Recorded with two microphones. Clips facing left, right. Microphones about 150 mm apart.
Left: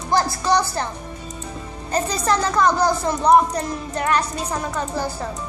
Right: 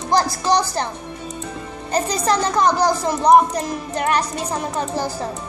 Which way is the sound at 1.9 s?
15° right (ahead or behind).